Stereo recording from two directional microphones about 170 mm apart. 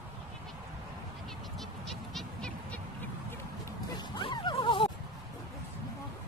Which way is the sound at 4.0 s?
25° left (ahead or behind).